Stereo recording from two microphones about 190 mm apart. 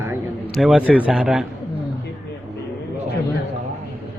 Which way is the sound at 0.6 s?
5° right (ahead or behind).